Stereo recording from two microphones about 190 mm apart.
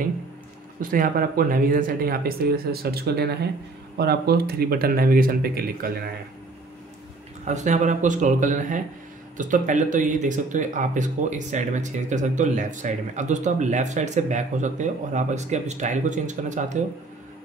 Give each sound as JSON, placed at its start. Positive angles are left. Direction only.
{"t": 0.8, "sound": "speech", "side_deg": -50}
{"t": 7.4, "sound": "speech", "side_deg": -40}